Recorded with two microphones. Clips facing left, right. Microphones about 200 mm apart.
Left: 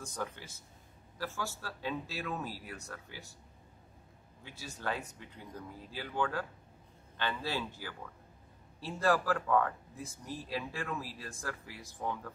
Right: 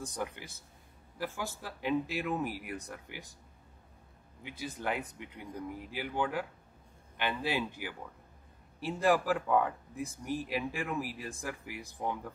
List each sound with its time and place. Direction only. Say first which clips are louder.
0.0 s speech: right 2 dB; 15° right (ahead or behind)
4.4 s speech: right 6 dB; 15° right (ahead or behind)